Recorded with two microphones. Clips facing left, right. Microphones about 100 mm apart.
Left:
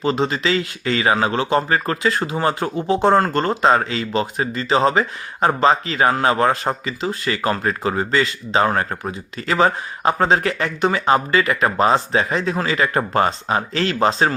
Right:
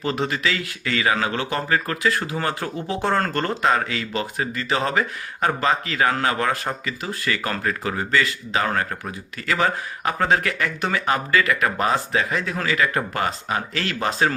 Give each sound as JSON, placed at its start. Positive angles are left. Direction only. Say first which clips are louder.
{"t": 0.0, "sound": "speech", "louder": "left 4 dB", "side_deg": 25}